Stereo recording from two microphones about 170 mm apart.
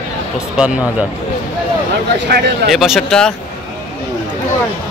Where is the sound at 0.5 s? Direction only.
5° right (ahead or behind).